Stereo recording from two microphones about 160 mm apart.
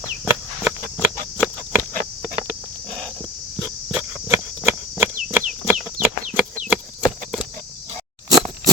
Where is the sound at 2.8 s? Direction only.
5° left (ahead or behind).